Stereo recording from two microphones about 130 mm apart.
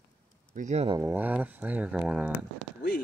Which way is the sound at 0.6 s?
65° right (ahead or behind).